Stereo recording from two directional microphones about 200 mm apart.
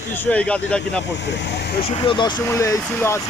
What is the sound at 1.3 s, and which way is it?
Speech, 60° left (ahead or behind).